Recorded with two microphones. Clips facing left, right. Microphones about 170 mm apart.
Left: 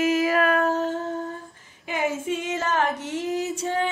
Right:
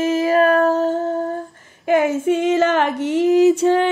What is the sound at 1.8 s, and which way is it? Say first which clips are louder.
Female singing: right 10 dB; 65° right (ahead or behind).